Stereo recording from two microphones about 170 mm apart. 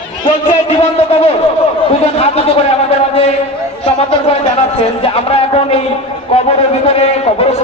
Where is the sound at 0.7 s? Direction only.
35° left (ahead or behind).